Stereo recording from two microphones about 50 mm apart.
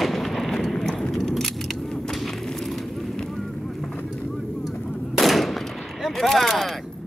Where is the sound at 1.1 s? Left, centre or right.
Centre.